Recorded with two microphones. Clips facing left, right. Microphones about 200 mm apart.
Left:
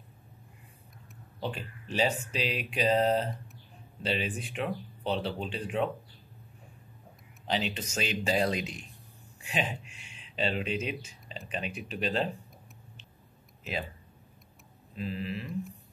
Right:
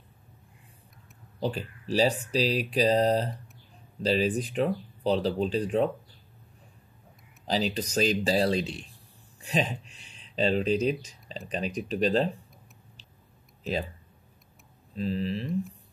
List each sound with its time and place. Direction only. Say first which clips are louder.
1.4 s speech: right 5 dB; 35° right (ahead or behind)
7.4 s speech: right 4 dB; 40° right (ahead or behind)
15.0 s speech: right 5 dB; 35° right (ahead or behind)